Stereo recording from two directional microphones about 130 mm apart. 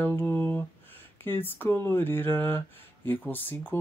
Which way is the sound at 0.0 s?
15° left (ahead or behind).